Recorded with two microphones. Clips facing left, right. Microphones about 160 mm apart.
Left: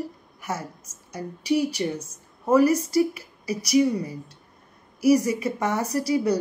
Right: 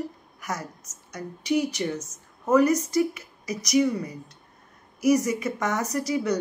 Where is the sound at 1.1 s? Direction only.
35° left (ahead or behind).